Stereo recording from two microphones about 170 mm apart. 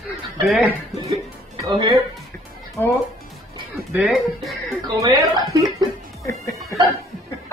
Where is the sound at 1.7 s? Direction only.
30° right (ahead or behind).